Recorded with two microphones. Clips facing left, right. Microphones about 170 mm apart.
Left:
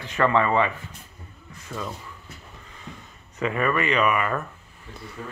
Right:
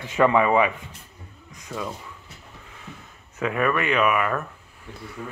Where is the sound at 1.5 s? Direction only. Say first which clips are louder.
Right 1 dB; 15° right (ahead or behind).